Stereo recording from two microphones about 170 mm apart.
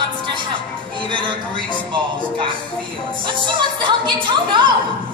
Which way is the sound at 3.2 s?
30° right (ahead or behind).